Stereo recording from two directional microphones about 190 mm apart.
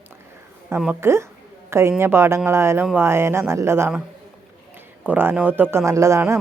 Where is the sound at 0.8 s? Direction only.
10° right (ahead or behind).